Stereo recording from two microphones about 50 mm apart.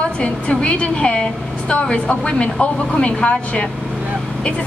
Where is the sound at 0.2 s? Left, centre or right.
Left.